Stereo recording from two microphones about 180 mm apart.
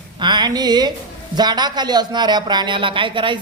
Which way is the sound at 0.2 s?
25° right (ahead or behind).